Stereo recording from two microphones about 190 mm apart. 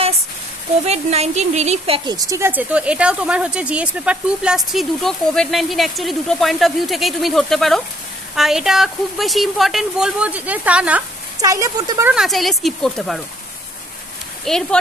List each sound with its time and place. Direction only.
0.8 s speech: 35° right (ahead or behind)
2.0 s speech: 20° right (ahead or behind)
11.3 s speech: 15° right (ahead or behind)
12.1 s speech: centre (ahead or behind)
14.4 s speech: centre (ahead or behind)